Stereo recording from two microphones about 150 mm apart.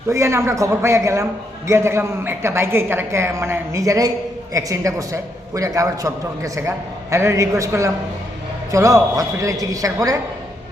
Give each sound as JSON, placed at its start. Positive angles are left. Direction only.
{"t": 0.1, "sound": "a man's voice", "side_deg": -20}